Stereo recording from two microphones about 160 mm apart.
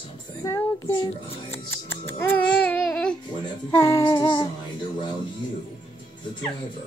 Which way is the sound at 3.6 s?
20° left (ahead or behind).